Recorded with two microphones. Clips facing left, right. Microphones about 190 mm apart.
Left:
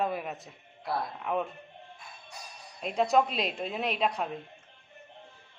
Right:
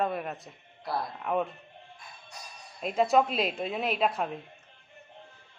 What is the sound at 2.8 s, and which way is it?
Speech, centre (ahead or behind).